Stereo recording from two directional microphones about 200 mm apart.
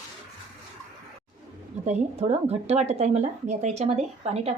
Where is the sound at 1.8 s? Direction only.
30° right (ahead or behind).